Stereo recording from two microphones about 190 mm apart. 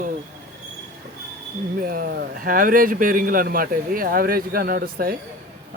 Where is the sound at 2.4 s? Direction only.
45° right (ahead or behind).